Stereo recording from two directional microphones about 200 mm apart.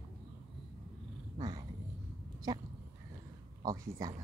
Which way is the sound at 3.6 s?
15° right (ahead or behind).